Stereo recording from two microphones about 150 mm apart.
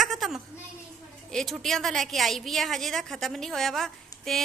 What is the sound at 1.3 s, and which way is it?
A woman's voice, centre (ahead or behind).